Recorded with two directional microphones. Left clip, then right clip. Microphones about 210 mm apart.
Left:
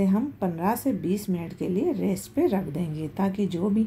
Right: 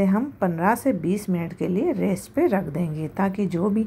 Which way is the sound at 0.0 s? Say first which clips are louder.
Right 4 dB; 15° right (ahead or behind).